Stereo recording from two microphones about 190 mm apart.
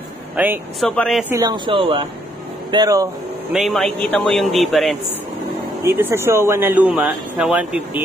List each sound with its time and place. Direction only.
0.4 s speech: 10° right (ahead or behind)
0.8 s a man's voice: centre (ahead or behind)
1.3 s speech: 20° right (ahead or behind)
3.5 s a man's voice: centre (ahead or behind)
5.9 s a man's voice: 10° right (ahead or behind)